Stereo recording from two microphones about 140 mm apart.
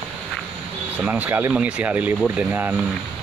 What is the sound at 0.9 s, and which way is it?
Speech, 10° right (ahead or behind).